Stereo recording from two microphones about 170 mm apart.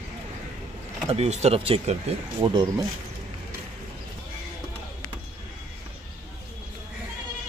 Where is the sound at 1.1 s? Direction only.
40° right (ahead or behind).